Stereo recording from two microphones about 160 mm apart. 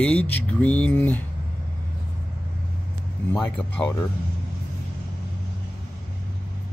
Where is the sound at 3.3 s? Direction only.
10° left (ahead or behind).